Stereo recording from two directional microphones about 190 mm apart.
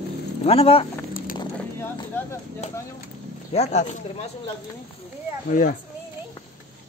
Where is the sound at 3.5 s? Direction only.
35° left (ahead or behind).